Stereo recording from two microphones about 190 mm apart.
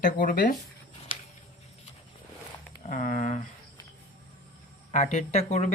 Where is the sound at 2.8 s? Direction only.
40° left (ahead or behind).